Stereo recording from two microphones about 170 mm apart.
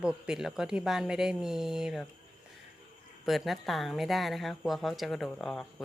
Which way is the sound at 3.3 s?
Centre (ahead or behind).